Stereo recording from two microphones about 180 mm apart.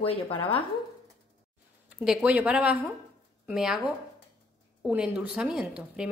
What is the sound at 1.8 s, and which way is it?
A woman's voice, 5° right (ahead or behind).